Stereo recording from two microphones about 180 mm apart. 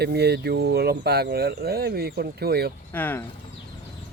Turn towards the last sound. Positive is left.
turn(degrees=10)  # may be behind; listen again after turning